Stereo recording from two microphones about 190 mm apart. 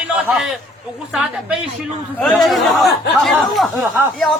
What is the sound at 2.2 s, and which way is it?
Speech, centre (ahead or behind).